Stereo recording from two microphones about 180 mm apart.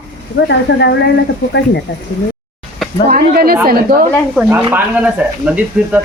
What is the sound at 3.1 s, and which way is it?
Speech, 55° right (ahead or behind).